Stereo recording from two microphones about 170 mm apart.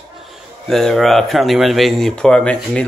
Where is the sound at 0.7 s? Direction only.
Centre (ahead or behind).